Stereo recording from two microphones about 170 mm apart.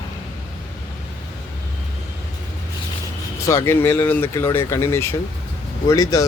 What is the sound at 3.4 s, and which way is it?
Speech, 15° left (ahead or behind).